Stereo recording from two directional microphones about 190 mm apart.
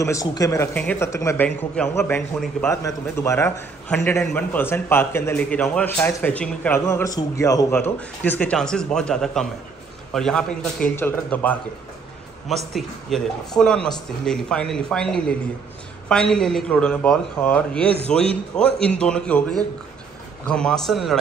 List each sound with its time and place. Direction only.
0.0 s a man's voice: 15° left (ahead or behind); by 21.2 s centre (ahead or behind)